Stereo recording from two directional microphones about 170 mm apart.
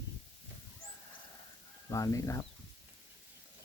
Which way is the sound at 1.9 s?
20° left (ahead or behind).